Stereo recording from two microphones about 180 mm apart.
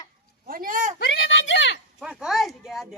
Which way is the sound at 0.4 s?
50° right (ahead or behind).